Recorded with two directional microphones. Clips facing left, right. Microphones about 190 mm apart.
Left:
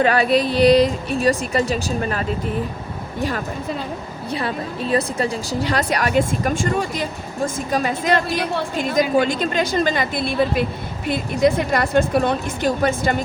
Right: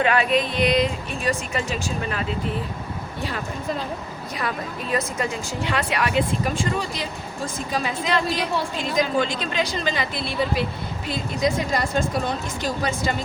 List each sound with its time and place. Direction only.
0.0 s speech: 35° left (ahead or behind)
4.4 s a woman's voice: 30° left (ahead or behind); by 13.1 s 55° left (ahead or behind)